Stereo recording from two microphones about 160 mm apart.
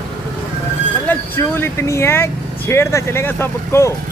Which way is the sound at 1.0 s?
15° left (ahead or behind).